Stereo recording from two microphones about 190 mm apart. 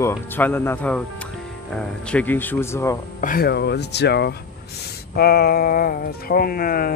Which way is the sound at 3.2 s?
50° left (ahead or behind).